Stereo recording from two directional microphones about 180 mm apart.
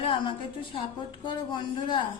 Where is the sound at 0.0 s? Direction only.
30° left (ahead or behind).